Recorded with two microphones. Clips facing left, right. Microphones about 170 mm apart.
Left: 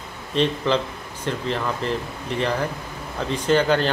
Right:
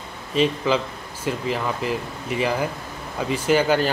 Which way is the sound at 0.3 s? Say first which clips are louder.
Right 1 dB; 5° right (ahead or behind).